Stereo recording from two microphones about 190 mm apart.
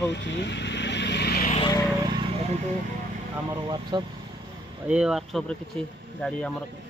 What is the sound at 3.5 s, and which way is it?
Speech, 20° right (ahead or behind).